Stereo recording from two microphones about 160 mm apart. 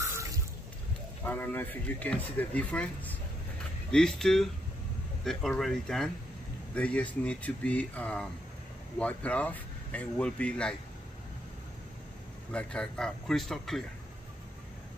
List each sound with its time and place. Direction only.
0.0 s water: 20° right (ahead or behind)
1.2 s speech: 10° left (ahead or behind)
12.5 s speech: 5° left (ahead or behind)